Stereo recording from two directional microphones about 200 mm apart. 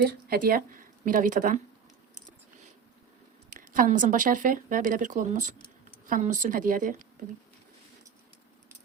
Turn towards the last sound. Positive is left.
turn(degrees=-40)  # may be behind; listen again after turning